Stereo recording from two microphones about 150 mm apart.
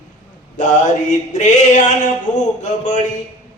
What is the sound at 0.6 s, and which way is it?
Male singing, 55° left (ahead or behind).